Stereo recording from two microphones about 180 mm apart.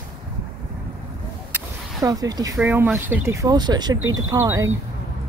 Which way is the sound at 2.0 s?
20° right (ahead or behind).